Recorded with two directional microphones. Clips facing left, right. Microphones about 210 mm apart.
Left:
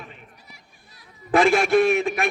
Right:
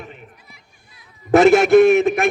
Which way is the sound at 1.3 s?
45° right (ahead or behind).